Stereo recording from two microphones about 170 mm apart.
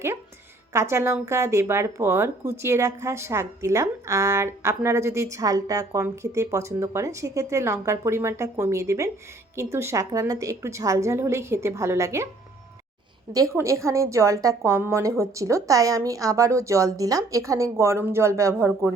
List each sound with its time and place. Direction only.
0.7 s a woman's voice: 15° right (ahead or behind)
13.3 s a woman's voice: 20° right (ahead or behind)